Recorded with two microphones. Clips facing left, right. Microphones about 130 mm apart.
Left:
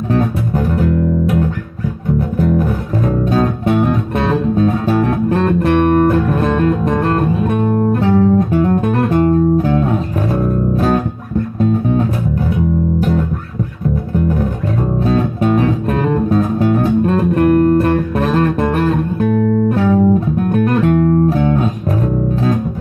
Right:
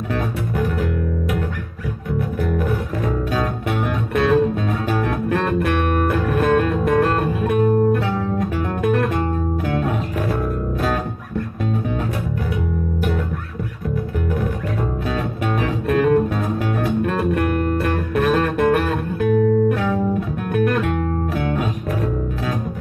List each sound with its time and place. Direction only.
0.1 s music: 35° left (ahead or behind)
3.6 s music: 35° left (ahead or behind)
15.0 s music: 35° left (ahead or behind)
18.2 s music: 30° left (ahead or behind)